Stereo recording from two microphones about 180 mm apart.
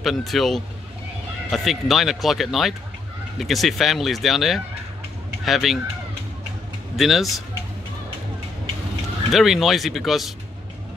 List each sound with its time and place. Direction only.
0.0 s speech: centre (ahead or behind)
7.0 s speech: centre (ahead or behind)
9.3 s speech: centre (ahead or behind)